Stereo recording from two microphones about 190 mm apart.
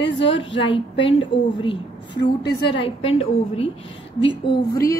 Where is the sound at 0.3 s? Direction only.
25° left (ahead or behind).